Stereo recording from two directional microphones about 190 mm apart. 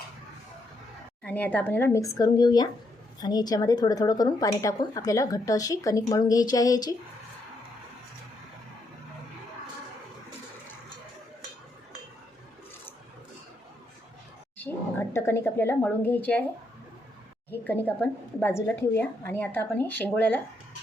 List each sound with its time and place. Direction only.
1.2 s a woman's voice: 10° left (ahead or behind)
14.6 s a woman's voice: 15° left (ahead or behind)
17.5 s a woman's voice: 10° left (ahead or behind)